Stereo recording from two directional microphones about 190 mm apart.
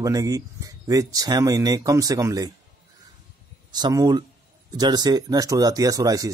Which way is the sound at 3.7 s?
20° right (ahead or behind).